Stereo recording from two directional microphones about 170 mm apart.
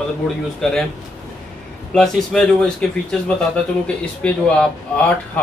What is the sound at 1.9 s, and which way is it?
Speech, 5° left (ahead or behind).